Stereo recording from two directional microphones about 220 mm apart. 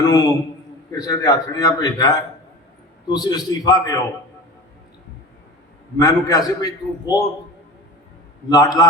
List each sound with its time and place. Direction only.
0.0 s a man's voice: 15° left (ahead or behind)
6.0 s a man's voice: 15° left (ahead or behind)
8.4 s a man's voice: 15° left (ahead or behind)